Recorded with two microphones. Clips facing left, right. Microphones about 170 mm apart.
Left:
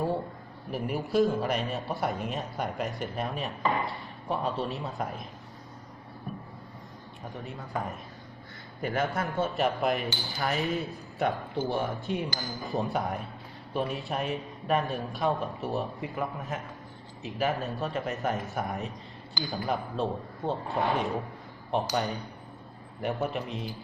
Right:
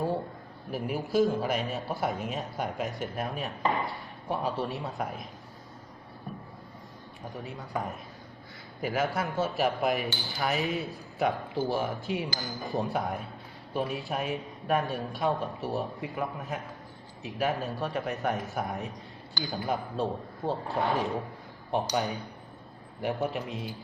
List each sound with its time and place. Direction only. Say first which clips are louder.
0.7 s a man's voice: even; centre (ahead or behind)
7.4 s a man's voice: even; centre (ahead or behind)